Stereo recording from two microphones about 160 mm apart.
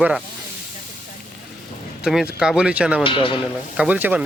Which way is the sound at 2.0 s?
5° right (ahead or behind).